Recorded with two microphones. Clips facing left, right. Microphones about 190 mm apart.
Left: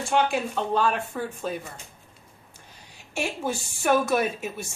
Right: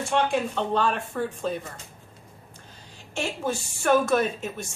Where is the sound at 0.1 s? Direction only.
5° left (ahead or behind).